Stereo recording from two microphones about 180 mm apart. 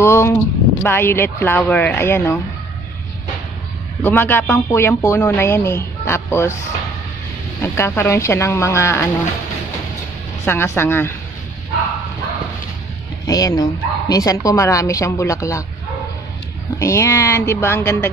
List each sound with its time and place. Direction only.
0.0 s speech: 15° left (ahead or behind)
4.0 s speech: 10° left (ahead or behind)
7.6 s speech: 15° left (ahead or behind)
10.4 s speech: 10° left (ahead or behind)
13.3 s speech: 20° left (ahead or behind)
16.7 s speech: 15° left (ahead or behind)